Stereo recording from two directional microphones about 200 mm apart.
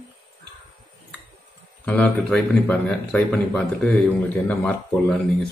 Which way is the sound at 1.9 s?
5° left (ahead or behind).